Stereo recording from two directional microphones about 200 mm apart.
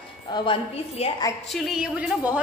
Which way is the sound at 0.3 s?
30° left (ahead or behind).